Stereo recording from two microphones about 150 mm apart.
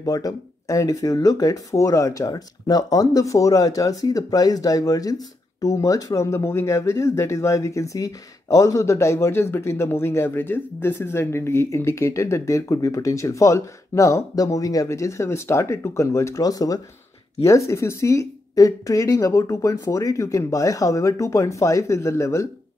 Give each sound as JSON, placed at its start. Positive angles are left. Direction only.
{"t": 0.0, "sound": "speech", "side_deg": 25}